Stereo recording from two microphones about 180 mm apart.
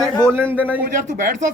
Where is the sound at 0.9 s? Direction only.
45° right (ahead or behind).